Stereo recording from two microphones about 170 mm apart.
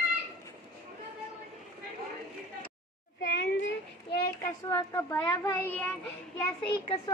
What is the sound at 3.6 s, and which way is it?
Child singing, 75° left (ahead or behind).